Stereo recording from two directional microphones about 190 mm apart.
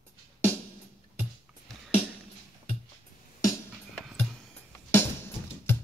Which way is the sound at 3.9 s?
5° left (ahead or behind).